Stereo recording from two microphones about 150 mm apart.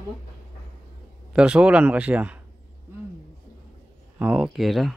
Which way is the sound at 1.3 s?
5° right (ahead or behind).